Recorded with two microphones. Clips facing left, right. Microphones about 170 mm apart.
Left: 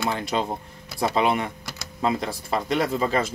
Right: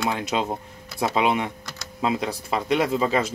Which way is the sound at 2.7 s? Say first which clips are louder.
Right 2 dB; 15° right (ahead or behind).